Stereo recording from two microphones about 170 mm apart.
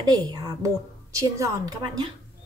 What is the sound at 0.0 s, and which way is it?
A woman's voice, 20° right (ahead or behind).